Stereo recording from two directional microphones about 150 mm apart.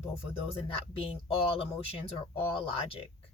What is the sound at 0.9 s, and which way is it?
Speech, 35° left (ahead or behind).